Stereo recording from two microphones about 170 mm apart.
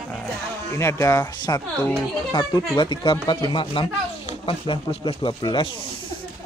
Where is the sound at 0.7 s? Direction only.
15° left (ahead or behind).